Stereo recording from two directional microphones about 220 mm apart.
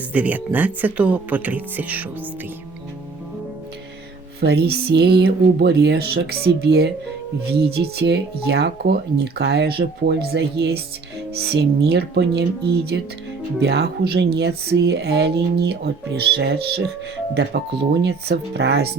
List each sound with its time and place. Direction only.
0.1 s speech: 5° right (ahead or behind)
4.4 s speech: 45° right (ahead or behind)
7.9 s speech: 50° right (ahead or behind)